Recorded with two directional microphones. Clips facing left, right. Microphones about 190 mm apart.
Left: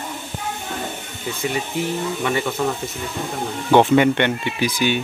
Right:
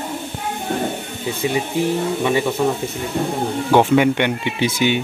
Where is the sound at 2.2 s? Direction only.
15° right (ahead or behind).